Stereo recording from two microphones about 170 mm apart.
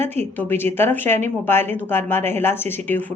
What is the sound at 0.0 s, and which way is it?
Speech, 15° left (ahead or behind).